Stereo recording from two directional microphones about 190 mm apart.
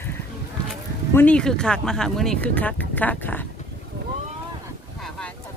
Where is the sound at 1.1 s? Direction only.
5° left (ahead or behind).